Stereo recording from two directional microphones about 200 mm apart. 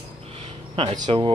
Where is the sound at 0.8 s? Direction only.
25° right (ahead or behind).